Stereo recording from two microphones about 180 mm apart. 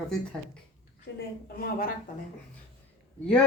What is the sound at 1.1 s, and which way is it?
Speech, 55° left (ahead or behind).